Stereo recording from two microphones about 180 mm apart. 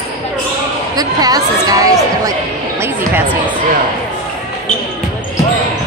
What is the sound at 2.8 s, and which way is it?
Speech, 10° right (ahead or behind).